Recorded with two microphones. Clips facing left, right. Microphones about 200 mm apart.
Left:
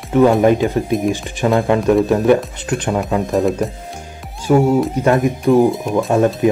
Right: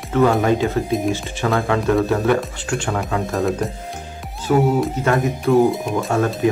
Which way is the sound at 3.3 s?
Centre (ahead or behind).